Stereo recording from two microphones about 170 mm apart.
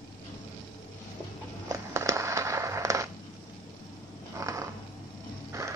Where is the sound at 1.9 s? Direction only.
15° right (ahead or behind).